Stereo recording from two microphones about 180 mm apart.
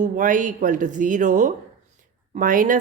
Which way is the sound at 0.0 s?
45° right (ahead or behind).